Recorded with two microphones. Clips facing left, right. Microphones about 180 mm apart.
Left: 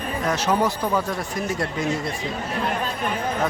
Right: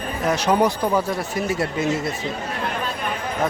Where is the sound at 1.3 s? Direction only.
5° right (ahead or behind).